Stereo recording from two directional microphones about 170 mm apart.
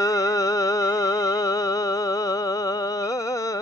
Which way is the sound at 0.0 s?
20° left (ahead or behind).